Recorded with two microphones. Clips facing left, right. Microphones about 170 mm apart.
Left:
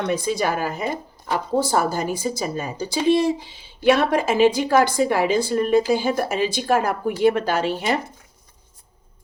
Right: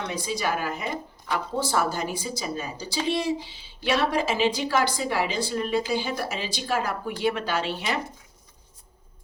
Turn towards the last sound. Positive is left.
turn(degrees=45)  # may be behind; listen again after turning